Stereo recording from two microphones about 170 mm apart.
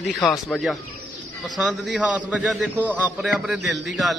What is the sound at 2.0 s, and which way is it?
A man's voice, 10° right (ahead or behind).